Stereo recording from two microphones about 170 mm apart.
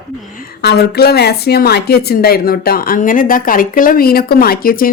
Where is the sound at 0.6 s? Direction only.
75° left (ahead or behind).